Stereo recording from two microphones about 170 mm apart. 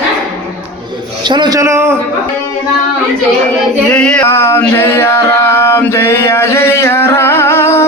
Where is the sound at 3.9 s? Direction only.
5° left (ahead or behind).